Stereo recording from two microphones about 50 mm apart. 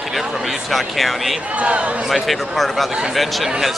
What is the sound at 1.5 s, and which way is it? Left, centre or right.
Speech, right.